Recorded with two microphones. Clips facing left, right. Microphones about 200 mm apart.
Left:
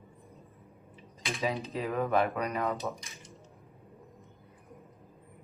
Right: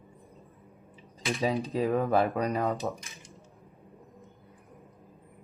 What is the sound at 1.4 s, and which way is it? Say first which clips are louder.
Speech: right 5 dB; 30° right (ahead or behind).